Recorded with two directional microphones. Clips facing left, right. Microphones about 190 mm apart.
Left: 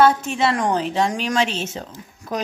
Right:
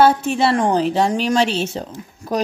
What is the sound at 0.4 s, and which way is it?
Speech, 30° right (ahead or behind).